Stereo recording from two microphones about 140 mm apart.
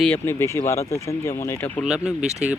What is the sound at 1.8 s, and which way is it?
Speech, 5° right (ahead or behind).